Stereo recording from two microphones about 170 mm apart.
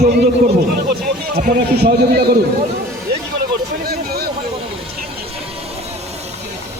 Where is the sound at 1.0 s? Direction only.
55° right (ahead or behind).